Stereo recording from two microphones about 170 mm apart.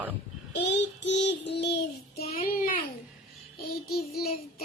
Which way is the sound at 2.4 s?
55° left (ahead or behind).